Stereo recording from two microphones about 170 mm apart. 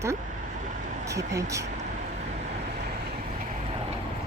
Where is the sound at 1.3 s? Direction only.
20° right (ahead or behind).